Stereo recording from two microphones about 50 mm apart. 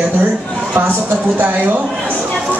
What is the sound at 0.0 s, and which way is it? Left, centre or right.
Speech, right.